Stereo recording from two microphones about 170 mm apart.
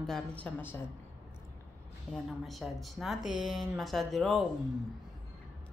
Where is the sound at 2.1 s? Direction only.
5° right (ahead or behind).